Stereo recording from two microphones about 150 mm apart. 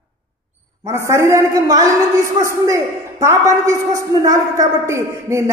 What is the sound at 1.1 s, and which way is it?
A woman's voice, 20° right (ahead or behind).